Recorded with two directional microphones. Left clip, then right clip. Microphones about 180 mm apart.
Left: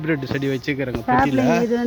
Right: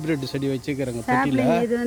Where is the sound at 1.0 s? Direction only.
40° left (ahead or behind).